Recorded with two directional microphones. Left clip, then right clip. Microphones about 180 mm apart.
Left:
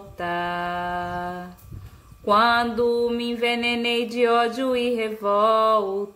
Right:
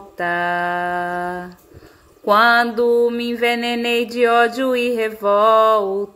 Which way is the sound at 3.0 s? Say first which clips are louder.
Right 6 dB; 20° right (ahead or behind).